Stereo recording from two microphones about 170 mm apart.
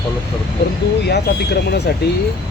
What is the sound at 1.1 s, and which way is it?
Speech, 70° left (ahead or behind).